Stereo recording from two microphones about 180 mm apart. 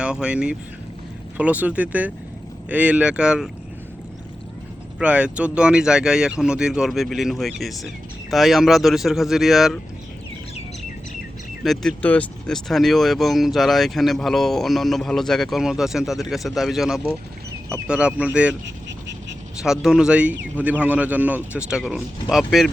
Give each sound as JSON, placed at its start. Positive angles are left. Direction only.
{"t": 0.0, "sound": "a man's voice", "side_deg": -5}
{"t": 4.9, "sound": "speech", "side_deg": -5}
{"t": 11.6, "sound": "speech", "side_deg": 0}
{"t": 18.9, "sound": "duck", "side_deg": -80}
{"t": 19.6, "sound": "a man's voice", "side_deg": -5}